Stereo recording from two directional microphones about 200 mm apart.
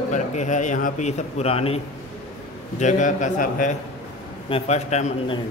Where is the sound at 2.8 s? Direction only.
40° left (ahead or behind).